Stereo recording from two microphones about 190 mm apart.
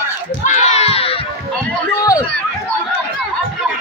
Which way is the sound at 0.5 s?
35° left (ahead or behind).